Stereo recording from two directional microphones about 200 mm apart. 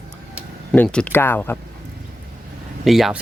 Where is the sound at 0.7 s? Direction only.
5° left (ahead or behind).